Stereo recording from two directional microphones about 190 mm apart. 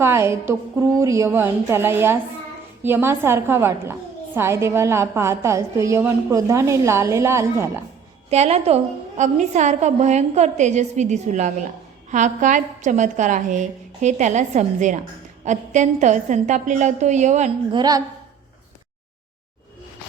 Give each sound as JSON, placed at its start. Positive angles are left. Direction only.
{"t": 0.0, "sound": "a woman's voice", "side_deg": -15}
{"t": 8.3, "sound": "a woman's voice", "side_deg": -35}
{"t": 17.7, "sound": "a woman's voice", "side_deg": -20}